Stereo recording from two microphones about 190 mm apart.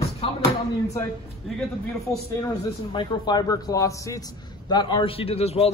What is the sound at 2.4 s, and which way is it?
A man's voice, 25° left (ahead or behind).